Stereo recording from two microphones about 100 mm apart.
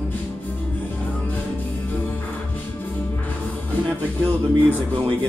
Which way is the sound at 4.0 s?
20° left (ahead or behind).